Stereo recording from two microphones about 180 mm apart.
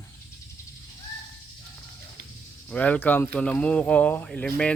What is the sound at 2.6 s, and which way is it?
Speech, 10° left (ahead or behind).